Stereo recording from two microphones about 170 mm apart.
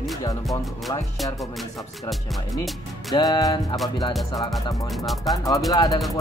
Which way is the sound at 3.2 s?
20° left (ahead or behind).